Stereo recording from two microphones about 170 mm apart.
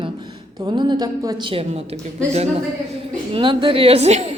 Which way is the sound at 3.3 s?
30° right (ahead or behind).